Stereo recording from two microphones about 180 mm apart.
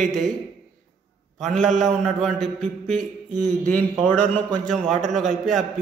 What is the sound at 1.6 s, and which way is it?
Speech, 40° right (ahead or behind).